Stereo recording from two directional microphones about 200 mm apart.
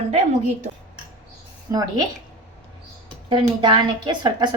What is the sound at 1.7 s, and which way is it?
Speech, 15° right (ahead or behind).